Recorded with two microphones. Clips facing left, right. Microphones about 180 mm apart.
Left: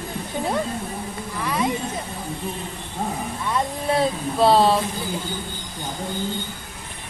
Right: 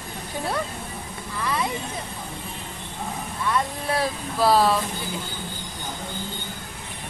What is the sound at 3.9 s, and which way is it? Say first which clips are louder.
Speech: left 4 dB; 25° left (ahead or behind).